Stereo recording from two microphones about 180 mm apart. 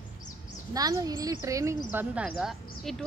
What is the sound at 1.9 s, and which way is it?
Speech, 5° right (ahead or behind).